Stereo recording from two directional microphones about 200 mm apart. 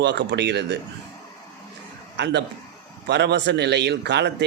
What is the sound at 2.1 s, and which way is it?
A man's voice, 60° right (ahead or behind).